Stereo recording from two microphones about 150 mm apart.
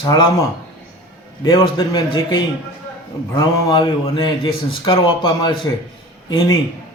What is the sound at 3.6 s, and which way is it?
Speech, 30° left (ahead or behind).